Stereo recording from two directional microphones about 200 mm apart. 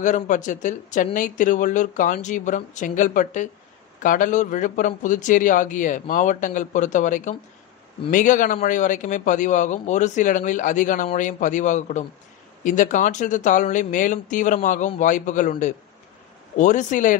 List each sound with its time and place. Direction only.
0.0 s speech: 40° left (ahead or behind)